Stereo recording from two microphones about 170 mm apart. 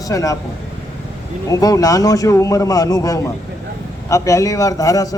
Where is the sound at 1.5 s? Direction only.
20° left (ahead or behind).